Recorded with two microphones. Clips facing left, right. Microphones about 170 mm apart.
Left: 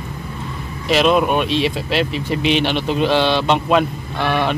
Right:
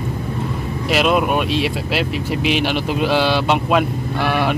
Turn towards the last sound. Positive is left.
turn(degrees=-10)  # may be behind; listen again after turning